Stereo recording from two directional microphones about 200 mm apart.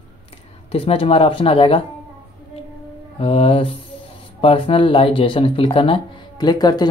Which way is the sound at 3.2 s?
30° left (ahead or behind).